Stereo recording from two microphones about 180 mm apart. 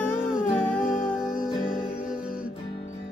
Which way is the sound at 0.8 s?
50° left (ahead or behind).